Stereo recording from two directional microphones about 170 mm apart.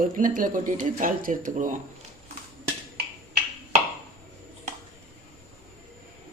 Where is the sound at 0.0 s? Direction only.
55° right (ahead or behind).